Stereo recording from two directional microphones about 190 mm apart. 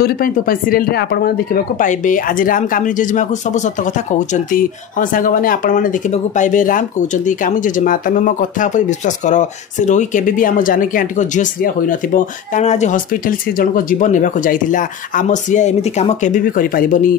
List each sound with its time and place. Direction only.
0.0 s speech: 50° left (ahead or behind)